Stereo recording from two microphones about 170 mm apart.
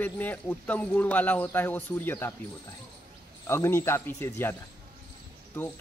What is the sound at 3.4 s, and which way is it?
A man's voice, 15° left (ahead or behind).